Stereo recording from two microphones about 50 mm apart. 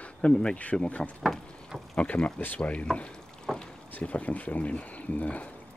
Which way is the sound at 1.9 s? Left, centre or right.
Left.